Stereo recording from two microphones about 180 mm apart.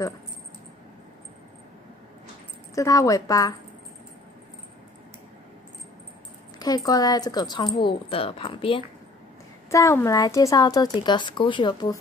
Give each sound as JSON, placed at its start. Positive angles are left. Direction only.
{"t": 2.7, "sound": "speech", "side_deg": 20}
{"t": 6.9, "sound": "speech", "side_deg": 20}
{"t": 9.7, "sound": "speech", "side_deg": 15}